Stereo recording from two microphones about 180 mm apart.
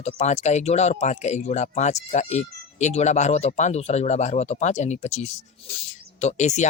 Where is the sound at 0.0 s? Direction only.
40° left (ahead or behind).